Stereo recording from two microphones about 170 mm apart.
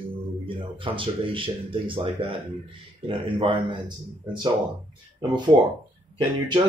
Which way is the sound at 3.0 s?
30° right (ahead or behind).